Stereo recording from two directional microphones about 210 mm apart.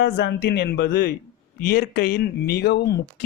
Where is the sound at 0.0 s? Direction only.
55° left (ahead or behind).